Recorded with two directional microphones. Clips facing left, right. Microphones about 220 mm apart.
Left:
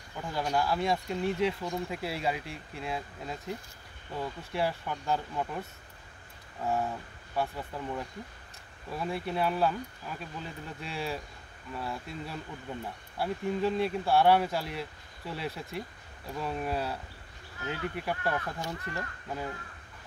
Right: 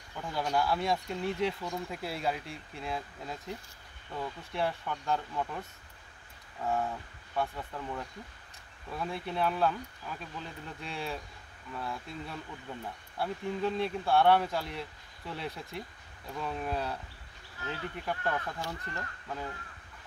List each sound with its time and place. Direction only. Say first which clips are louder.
0.1 s speech: left 1 dB; 5° left (ahead or behind)
6.6 s speech: left 1 dB; 5° left (ahead or behind)